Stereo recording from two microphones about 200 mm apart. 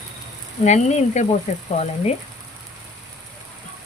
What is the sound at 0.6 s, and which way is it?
Frying, 35° left (ahead or behind).